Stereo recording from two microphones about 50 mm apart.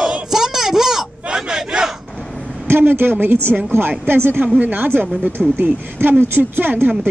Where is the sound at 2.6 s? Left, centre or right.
Right.